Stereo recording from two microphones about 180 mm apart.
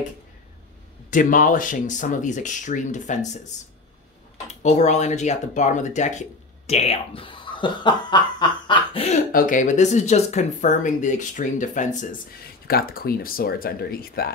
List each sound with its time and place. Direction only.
1.1 s speech: 45° left (ahead or behind)
9.3 s speech: 45° left (ahead or behind)
12.6 s speech: 55° left (ahead or behind)